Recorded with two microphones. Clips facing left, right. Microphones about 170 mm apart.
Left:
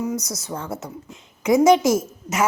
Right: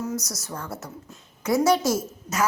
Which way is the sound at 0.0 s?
15° left (ahead or behind).